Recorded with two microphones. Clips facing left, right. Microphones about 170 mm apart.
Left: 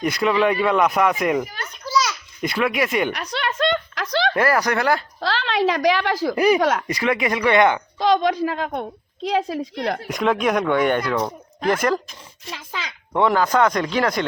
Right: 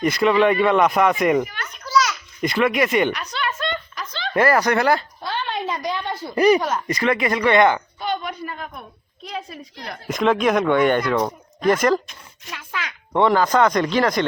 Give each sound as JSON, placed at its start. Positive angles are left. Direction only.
{"t": 0.0, "sound": "speech", "side_deg": 0}
{"t": 1.5, "sound": "children playing", "side_deg": 35}
{"t": 2.4, "sound": "speech", "side_deg": 0}
{"t": 3.3, "sound": "a sound", "side_deg": 70}
{"t": 4.4, "sound": "speech", "side_deg": 0}
{"t": 5.2, "sound": "a woman's voice", "side_deg": 80}
{"t": 6.3, "sound": "speech", "side_deg": 10}
{"t": 6.6, "sound": "speech", "side_deg": 80}
{"t": 6.8, "sound": "speech", "side_deg": 10}
{"t": 7.9, "sound": "a woman's voice", "side_deg": 90}
{"t": 10.3, "sound": "speech", "side_deg": 5}
{"t": 11.7, "sound": "speech", "side_deg": 5}
{"t": 13.1, "sound": "speech", "side_deg": 5}